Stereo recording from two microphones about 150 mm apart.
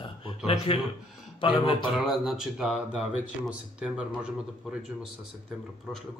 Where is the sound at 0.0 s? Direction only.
35° left (ahead or behind).